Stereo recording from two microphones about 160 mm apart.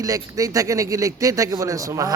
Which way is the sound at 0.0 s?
20° right (ahead or behind).